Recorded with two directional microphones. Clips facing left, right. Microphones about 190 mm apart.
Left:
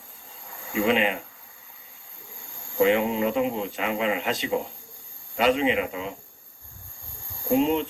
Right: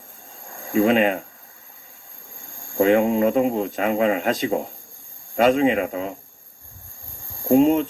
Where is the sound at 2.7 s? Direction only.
45° right (ahead or behind).